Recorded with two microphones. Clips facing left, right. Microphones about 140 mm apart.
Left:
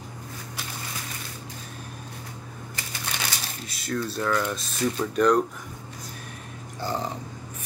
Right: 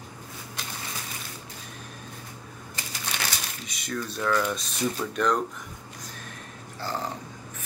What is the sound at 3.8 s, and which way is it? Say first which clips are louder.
Speech: left 3 dB; 5° left (ahead or behind).